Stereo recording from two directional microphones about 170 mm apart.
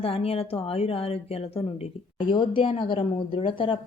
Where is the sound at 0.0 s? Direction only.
35° left (ahead or behind).